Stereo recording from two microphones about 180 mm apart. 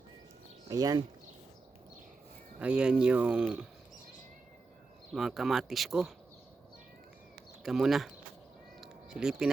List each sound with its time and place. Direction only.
0.7 s speech: 20° right (ahead or behind)
2.6 s speech: 5° right (ahead or behind)
5.1 s speech: centre (ahead or behind)
7.6 s speech: centre (ahead or behind)
8.8 s a sound: 5° right (ahead or behind)